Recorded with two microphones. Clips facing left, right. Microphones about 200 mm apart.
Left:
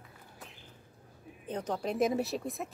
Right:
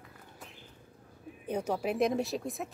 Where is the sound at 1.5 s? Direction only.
10° right (ahead or behind).